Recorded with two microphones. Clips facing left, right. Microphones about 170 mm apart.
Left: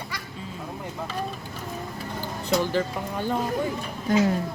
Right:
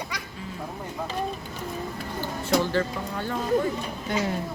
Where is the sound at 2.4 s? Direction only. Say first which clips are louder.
Even; 15° left (ahead or behind).